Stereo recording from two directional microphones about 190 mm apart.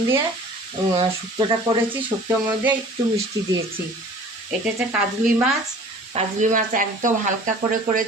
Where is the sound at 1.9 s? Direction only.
10° right (ahead or behind).